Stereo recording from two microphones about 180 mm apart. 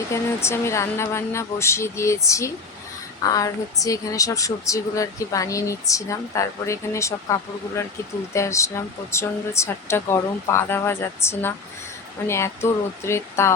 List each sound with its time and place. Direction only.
0.1 s a woman's voice: 15° left (ahead or behind)
12.6 s a woman's voice: 15° left (ahead or behind)